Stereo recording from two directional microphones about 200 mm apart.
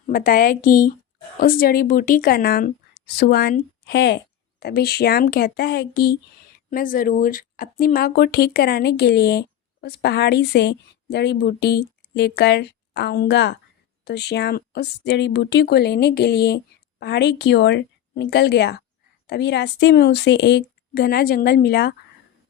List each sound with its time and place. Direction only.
0.1 s speech: 45° left (ahead or behind)
6.7 s speech: 45° left (ahead or behind)